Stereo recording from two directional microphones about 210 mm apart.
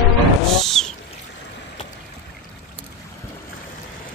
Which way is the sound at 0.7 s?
Centre (ahead or behind).